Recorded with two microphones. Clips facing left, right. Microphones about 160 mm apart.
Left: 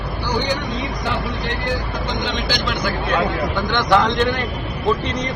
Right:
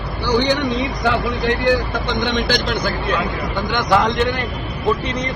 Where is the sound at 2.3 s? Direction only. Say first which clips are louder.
Right 4 dB; 60° right (ahead or behind).